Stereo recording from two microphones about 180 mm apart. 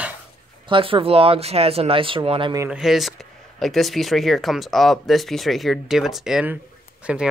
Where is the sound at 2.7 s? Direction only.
Centre (ahead or behind).